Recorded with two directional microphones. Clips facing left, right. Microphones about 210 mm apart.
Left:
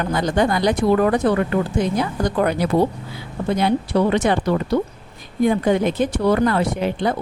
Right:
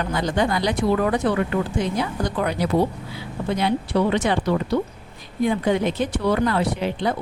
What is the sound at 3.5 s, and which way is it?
Speech, 45° left (ahead or behind).